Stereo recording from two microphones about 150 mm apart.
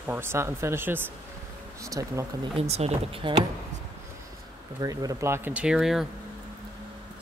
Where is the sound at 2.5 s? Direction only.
45° right (ahead or behind).